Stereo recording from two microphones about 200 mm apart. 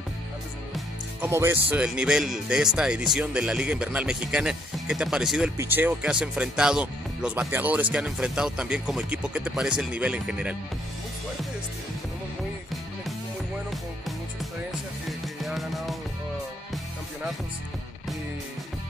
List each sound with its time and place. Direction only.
1.2 s speech: 10° right (ahead or behind)
13.7 s music: centre (ahead or behind)